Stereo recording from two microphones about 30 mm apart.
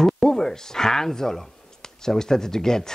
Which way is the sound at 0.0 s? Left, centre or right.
Centre.